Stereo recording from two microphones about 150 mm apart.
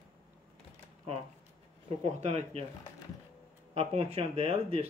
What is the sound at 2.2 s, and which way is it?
Speech, 50° right (ahead or behind).